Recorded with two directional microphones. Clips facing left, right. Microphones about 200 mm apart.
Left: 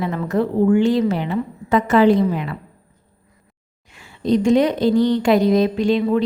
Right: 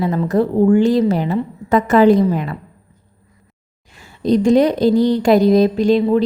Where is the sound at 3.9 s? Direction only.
40° right (ahead or behind).